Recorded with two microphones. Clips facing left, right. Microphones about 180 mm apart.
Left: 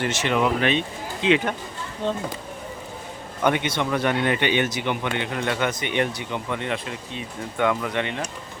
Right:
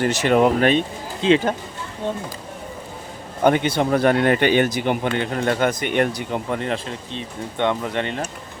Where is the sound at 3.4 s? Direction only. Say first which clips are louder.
Right 5 dB; 35° right (ahead or behind).